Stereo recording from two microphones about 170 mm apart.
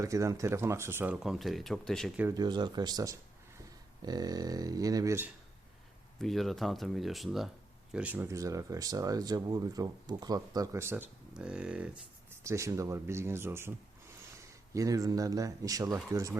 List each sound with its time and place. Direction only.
0.0 s speech: 20° right (ahead or behind); by 2.1 s centre (ahead or behind)
2.3 s speech: 25° right (ahead or behind)
6.1 s speech: centre (ahead or behind)
12.3 s speech: 15° right (ahead or behind)